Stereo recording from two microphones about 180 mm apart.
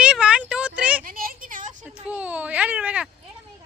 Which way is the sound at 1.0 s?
55° right (ahead or behind).